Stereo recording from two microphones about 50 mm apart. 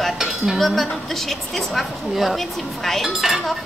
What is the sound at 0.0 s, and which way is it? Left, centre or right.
Speech, centre.